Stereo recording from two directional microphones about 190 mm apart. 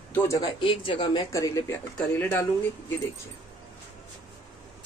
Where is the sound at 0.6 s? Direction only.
25° left (ahead or behind); by 2.9 s 10° left (ahead or behind).